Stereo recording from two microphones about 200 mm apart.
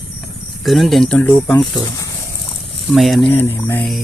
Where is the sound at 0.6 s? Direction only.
Centre (ahead or behind).